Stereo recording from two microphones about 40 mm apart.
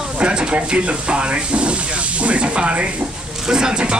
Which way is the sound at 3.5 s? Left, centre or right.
Centre.